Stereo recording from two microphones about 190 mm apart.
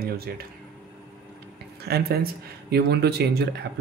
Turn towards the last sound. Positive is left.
turn(degrees=-60)  # may be behind; listen again after turning